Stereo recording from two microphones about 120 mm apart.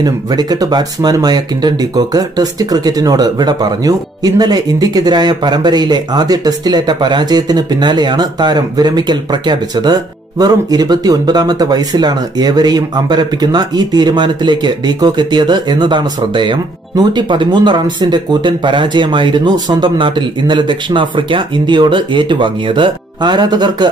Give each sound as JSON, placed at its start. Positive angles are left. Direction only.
{"t": 0.0, "sound": "speech", "side_deg": -35}